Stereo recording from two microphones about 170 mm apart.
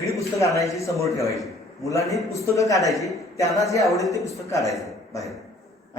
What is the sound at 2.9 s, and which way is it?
Speech, centre (ahead or behind).